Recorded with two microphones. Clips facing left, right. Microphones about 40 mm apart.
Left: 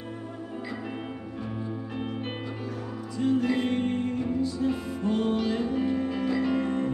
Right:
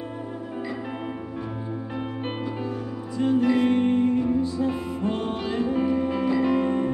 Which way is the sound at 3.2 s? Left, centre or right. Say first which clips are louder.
Right 4 dB; right.